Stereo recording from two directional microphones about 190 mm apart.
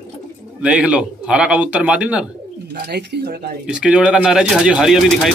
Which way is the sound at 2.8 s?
60° right (ahead or behind).